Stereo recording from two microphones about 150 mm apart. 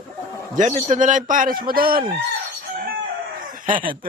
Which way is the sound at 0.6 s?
50° right (ahead or behind).